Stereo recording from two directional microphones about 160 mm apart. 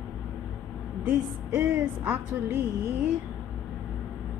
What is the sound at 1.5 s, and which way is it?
Speech, 5° right (ahead or behind).